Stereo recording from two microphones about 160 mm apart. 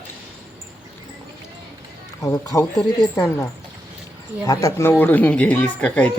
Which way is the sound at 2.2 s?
20° left (ahead or behind).